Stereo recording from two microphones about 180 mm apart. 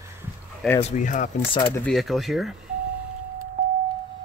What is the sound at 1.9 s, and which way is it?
Speech, centre (ahead or behind).